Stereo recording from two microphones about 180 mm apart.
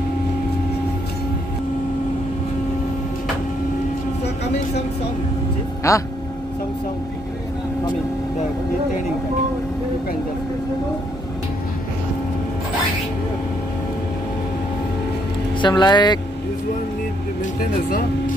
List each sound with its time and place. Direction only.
5.9 s speech: 15° left (ahead or behind)
15.6 s speech: 25° left (ahead or behind)